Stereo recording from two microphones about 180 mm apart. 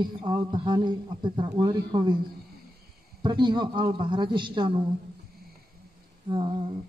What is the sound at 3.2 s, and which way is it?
A man's voice, 25° right (ahead or behind).